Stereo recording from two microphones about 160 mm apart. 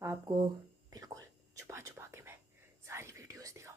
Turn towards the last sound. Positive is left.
turn(degrees=-20)  # may be behind; listen again after turning